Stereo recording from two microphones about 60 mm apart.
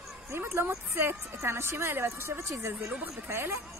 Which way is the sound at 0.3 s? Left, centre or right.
Right.